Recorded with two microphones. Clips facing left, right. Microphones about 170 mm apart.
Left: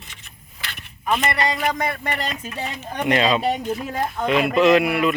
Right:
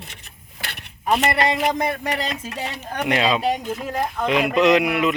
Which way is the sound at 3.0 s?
10° right (ahead or behind).